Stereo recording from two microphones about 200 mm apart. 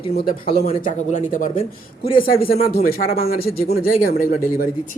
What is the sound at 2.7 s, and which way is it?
Speech, 45° left (ahead or behind).